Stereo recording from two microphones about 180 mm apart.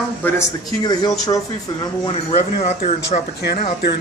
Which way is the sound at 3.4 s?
65° left (ahead or behind).